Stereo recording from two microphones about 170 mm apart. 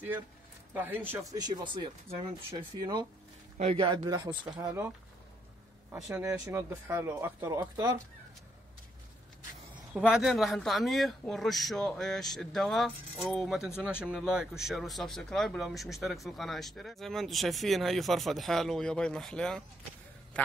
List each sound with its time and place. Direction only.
0.7 s speech: 10° right (ahead or behind)
3.5 s speech: 35° right (ahead or behind); by 8.0 s 20° right (ahead or behind)
9.9 s speech: 5° right (ahead or behind)